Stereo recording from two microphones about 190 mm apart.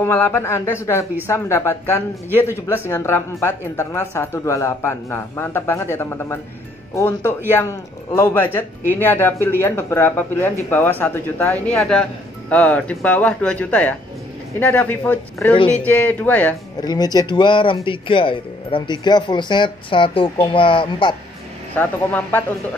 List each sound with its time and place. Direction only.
0.0 s speech: 10° left (ahead or behind)
16.8 s speech: 20° left (ahead or behind)
21.7 s speech: 10° left (ahead or behind)